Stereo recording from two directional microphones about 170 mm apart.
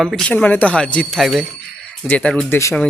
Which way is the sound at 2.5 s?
15° left (ahead or behind).